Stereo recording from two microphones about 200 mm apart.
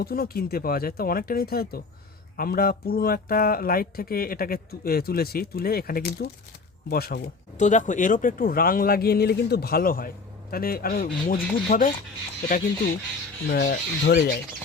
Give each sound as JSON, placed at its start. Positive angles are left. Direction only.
{"t": 0.0, "sound": "speech", "side_deg": 50}
{"t": 7.6, "sound": "speech", "side_deg": 40}